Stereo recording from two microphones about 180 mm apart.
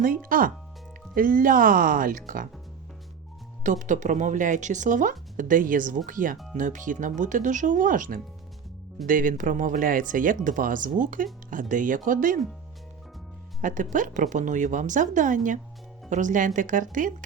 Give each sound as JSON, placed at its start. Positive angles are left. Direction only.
{"t": 0.0, "sound": "speech", "side_deg": -50}
{"t": 3.6, "sound": "speech", "side_deg": -45}
{"t": 13.6, "sound": "speech", "side_deg": -45}